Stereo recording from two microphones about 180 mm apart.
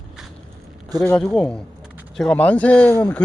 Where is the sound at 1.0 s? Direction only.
10° left (ahead or behind).